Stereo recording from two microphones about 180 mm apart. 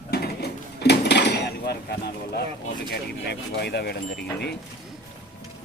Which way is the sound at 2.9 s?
65° left (ahead or behind).